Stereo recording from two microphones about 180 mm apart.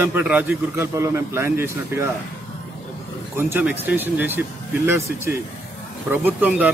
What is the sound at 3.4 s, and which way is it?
A man's voice, 10° right (ahead or behind).